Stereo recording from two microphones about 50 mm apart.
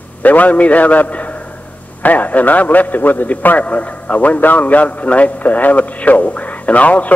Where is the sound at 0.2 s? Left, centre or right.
Left.